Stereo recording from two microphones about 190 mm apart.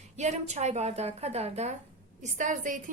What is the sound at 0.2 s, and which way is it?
A woman's voice, 35° right (ahead or behind).